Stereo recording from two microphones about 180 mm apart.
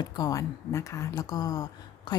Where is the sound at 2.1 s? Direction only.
25° left (ahead or behind).